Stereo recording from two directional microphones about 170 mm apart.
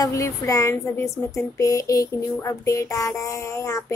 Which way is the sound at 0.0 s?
20° left (ahead or behind).